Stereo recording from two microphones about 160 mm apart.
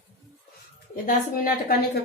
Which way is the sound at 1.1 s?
60° left (ahead or behind).